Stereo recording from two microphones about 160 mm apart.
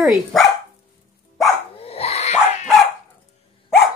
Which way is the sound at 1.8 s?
40° left (ahead or behind).